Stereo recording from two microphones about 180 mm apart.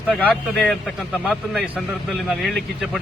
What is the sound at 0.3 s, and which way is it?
A man's voice, 5° left (ahead or behind).